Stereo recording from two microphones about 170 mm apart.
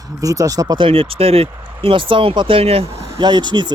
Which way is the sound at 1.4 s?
15° right (ahead or behind).